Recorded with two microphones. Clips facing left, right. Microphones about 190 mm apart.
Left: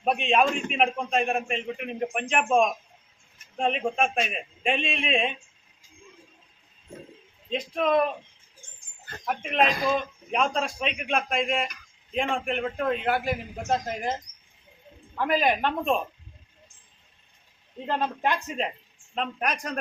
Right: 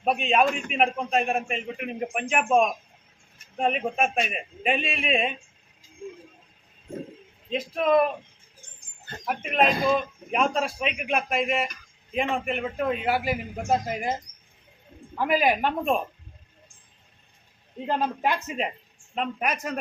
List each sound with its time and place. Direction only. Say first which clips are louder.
0.0 s a man's voice: right 1 dB; centre (ahead or behind)
7.5 s a man's voice: right 2 dB; 5° right (ahead or behind)
9.2 s a man's voice: right 1 dB; 5° right (ahead or behind)
15.2 s a man's voice: right 1 dB; 5° right (ahead or behind)
17.8 s a man's voice: right 1 dB; 10° right (ahead or behind)